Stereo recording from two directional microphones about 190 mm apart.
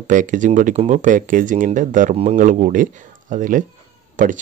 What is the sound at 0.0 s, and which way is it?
Speech, 45° right (ahead or behind).